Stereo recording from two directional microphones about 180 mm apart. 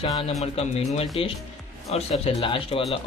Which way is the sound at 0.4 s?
35° left (ahead or behind).